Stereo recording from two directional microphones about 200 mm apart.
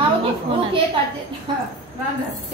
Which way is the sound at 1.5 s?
25° right (ahead or behind).